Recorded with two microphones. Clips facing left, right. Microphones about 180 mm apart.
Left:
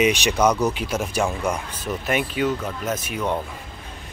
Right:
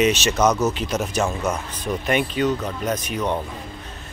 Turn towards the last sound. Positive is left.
turn(degrees=10)  # may be behind; listen again after turning